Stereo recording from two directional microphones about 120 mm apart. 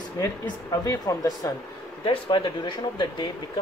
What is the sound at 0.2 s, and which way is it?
Speech, 30° left (ahead or behind).